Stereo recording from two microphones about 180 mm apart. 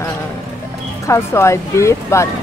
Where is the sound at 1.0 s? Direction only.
15° left (ahead or behind).